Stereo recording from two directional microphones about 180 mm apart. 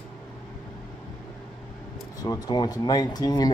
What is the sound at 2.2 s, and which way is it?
Speech, 20° left (ahead or behind).